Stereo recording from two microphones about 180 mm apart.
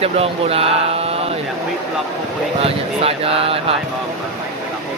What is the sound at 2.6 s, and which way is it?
Speech, 35° right (ahead or behind).